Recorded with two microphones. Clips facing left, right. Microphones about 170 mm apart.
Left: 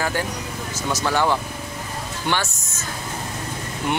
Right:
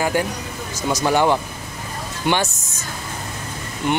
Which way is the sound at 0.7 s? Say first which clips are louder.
Right 4 dB; 15° right (ahead or behind).